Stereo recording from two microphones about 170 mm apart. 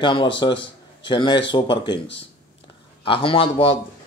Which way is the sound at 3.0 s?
30° left (ahead or behind).